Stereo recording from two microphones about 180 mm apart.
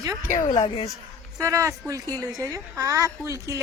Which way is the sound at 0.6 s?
30° left (ahead or behind).